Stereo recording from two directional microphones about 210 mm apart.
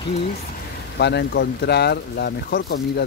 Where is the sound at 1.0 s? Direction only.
50° left (ahead or behind).